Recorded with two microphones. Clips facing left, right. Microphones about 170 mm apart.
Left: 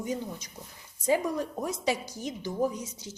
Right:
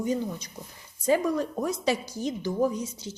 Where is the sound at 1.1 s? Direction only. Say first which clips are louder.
Right 3 dB; 15° left (ahead or behind).